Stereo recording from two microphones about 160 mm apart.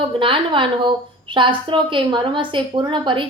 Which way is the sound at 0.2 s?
35° right (ahead or behind).